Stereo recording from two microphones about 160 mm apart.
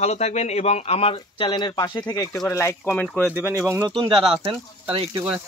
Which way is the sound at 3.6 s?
15° right (ahead or behind).